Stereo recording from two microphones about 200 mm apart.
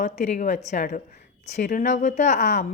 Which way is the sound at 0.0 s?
35° left (ahead or behind).